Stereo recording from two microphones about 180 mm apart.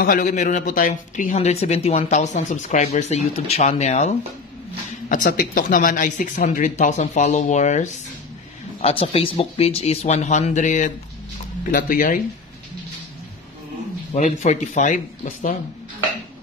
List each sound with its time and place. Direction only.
0.0 s speech: 50° left (ahead or behind)
8.8 s speech: 35° left (ahead or behind); by 12.2 s 50° left (ahead or behind)
14.1 s speech: 40° left (ahead or behind)